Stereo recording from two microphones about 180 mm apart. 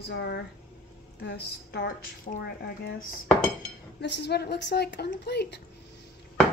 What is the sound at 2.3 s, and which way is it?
Speech, 40° left (ahead or behind).